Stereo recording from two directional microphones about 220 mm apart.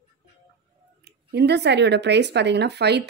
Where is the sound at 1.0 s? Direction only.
50° right (ahead or behind).